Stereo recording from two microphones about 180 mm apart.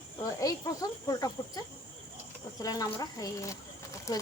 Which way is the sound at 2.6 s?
20° left (ahead or behind).